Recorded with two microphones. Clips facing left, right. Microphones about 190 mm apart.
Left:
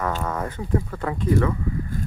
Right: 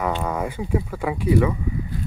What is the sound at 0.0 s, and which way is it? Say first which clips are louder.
Speech: right 2 dB; 10° right (ahead or behind).